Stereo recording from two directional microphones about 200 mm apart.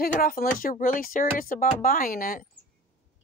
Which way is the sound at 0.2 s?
45° left (ahead or behind).